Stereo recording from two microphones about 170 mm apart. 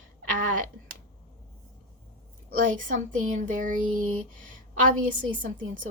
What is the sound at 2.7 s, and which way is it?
A woman's voice, 50° right (ahead or behind).